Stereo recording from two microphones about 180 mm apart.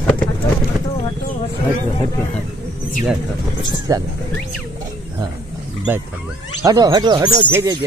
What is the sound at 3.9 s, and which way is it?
Speech, 20° right (ahead or behind).